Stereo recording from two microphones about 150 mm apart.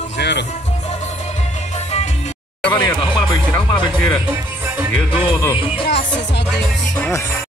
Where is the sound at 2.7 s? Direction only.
30° left (ahead or behind).